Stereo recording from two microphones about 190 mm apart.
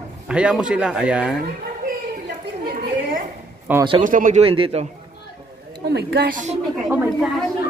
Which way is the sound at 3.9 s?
40° right (ahead or behind).